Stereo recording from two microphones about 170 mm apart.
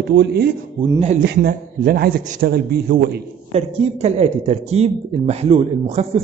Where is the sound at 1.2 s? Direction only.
60° right (ahead or behind).